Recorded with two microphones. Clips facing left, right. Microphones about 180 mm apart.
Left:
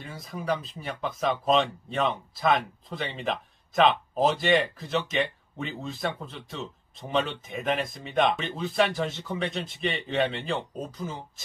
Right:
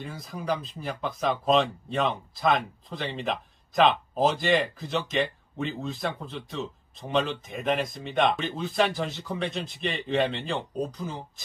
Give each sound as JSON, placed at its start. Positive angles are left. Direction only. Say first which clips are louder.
{"t": 0.0, "sound": "speech", "louder": "even", "side_deg": 0}